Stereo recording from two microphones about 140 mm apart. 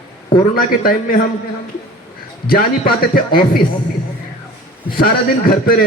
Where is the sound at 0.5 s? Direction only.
90° left.